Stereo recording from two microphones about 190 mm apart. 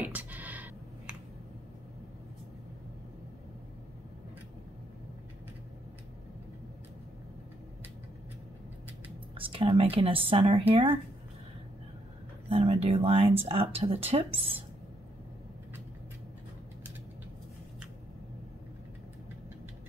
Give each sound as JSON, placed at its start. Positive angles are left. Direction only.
{"t": 0.0, "sound": "a sound", "side_deg": -10}
{"t": 9.3, "sound": "speech", "side_deg": -30}
{"t": 12.4, "sound": "speech", "side_deg": -30}